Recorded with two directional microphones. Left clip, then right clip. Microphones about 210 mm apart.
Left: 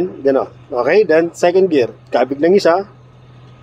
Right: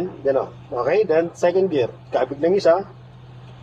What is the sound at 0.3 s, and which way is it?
Speech, 55° left (ahead or behind).